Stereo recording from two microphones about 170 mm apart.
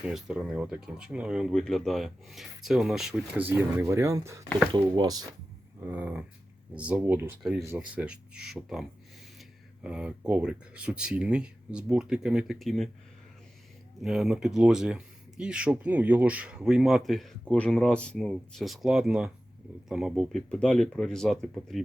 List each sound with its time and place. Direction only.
0.0 s speech: 5° right (ahead or behind); by 5.2 s 25° right (ahead or behind)
5.8 s speech: 10° right (ahead or behind)
14.0 s speech: centre (ahead or behind)